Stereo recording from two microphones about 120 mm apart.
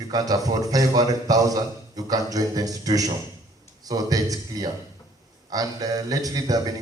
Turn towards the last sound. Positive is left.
turn(degrees=-30)  # may be behind; listen again after turning